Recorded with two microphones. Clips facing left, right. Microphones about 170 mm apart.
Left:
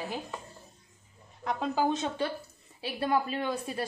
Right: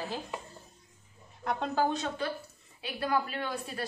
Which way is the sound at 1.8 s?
20° left (ahead or behind).